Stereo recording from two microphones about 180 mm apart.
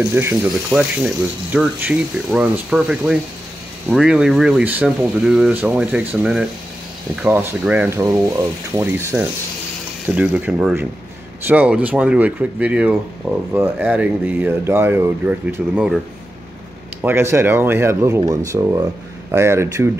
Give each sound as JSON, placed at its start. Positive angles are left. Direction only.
{"t": 0.1, "sound": "ratchet", "side_deg": -10}
{"t": 3.9, "sound": "speech", "side_deg": -5}
{"t": 7.2, "sound": "ratchet", "side_deg": -10}
{"t": 17.0, "sound": "ratchet", "side_deg": -15}